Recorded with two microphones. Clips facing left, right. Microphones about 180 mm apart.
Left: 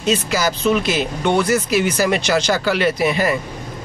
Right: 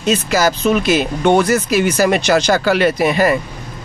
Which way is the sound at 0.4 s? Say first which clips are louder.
Right 3 dB; 50° right (ahead or behind).